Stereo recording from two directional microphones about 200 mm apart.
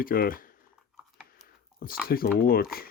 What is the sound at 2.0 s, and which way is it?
Speech, 50° left (ahead or behind).